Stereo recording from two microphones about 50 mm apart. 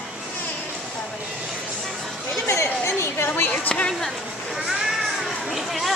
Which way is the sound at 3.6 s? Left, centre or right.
Left.